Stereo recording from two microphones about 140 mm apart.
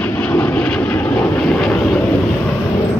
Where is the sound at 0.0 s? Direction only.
10° left (ahead or behind).